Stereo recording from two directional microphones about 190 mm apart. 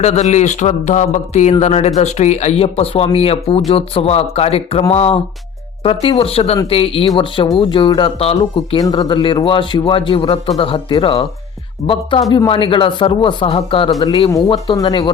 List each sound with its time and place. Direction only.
0.0 s speech: 35° left (ahead or behind)
11.8 s speech: 50° left (ahead or behind)
12.3 s speech: 25° left (ahead or behind)